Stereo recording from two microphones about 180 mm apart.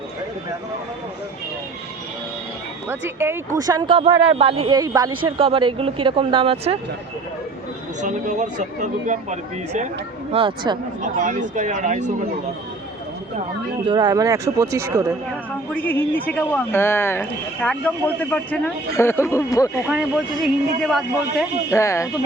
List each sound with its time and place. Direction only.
2.9 s speech: 15° right (ahead or behind)
4.3 s speech: 30° right (ahead or behind)
4.7 s speech: 20° right (ahead or behind)
8.0 s speech: 45° right (ahead or behind)
11.0 s speech: 45° right (ahead or behind)
13.8 s speech: 25° right (ahead or behind)
15.7 s speech: 10° left (ahead or behind)
19.9 s a man's voice: centre (ahead or behind)
21.7 s speech: 15° left (ahead or behind)